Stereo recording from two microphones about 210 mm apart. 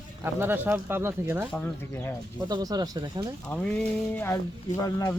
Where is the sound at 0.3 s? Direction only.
10° right (ahead or behind).